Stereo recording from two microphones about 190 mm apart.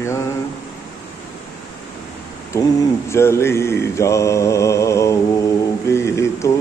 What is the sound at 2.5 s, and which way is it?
Mantra, 15° left (ahead or behind).